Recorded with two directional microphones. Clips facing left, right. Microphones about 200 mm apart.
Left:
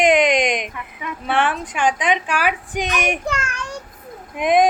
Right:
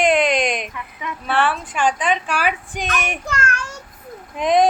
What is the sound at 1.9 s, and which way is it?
A woman's voice, 10° left (ahead or behind).